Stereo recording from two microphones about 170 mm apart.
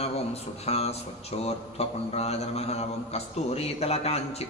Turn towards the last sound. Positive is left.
turn(degrees=35)  # may be behind; listen again after turning